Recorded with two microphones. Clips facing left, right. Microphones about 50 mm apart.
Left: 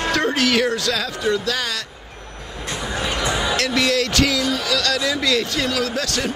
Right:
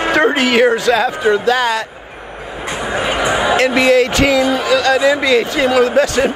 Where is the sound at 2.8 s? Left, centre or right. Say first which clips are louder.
Right 7 dB; right.